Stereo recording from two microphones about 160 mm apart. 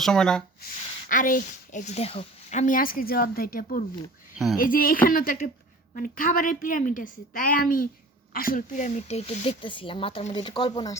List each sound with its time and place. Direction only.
0.0 s speech: 5° left (ahead or behind)
0.6 s a woman's voice: 60° left (ahead or behind); by 10.9 s 30° left (ahead or behind)